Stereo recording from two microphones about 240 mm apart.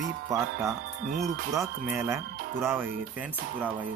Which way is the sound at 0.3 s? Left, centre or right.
Centre.